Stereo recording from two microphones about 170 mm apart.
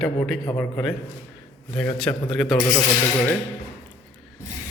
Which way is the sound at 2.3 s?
Centre (ahead or behind).